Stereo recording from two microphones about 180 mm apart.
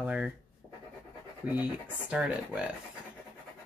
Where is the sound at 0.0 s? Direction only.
5° right (ahead or behind).